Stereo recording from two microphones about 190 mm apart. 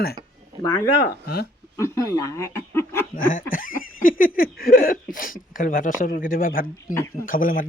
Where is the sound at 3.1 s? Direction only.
45° left (ahead or behind).